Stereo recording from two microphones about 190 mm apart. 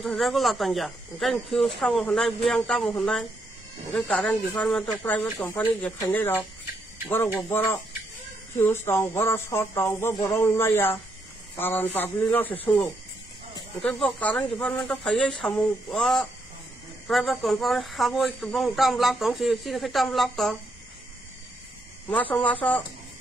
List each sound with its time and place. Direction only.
0.0 s speech: centre (ahead or behind)
22.1 s speech: 10° left (ahead or behind)